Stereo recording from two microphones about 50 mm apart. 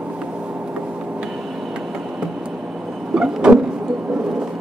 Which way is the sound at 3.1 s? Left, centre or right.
Centre.